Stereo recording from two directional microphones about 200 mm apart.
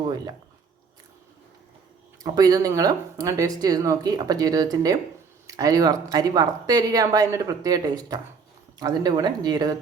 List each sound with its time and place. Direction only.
0.0 s speech: 20° right (ahead or behind)
2.2 s speech: 20° right (ahead or behind)